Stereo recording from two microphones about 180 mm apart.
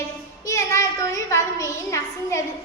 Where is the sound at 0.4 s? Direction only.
15° left (ahead or behind).